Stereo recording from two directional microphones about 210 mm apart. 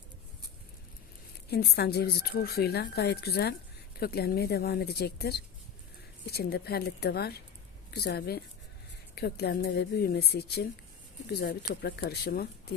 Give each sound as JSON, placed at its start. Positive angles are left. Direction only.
{"t": 1.5, "sound": "speech", "side_deg": 50}